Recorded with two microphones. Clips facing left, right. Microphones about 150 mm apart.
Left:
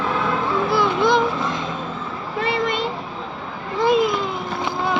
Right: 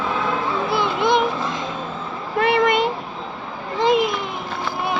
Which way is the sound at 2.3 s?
60° right (ahead or behind).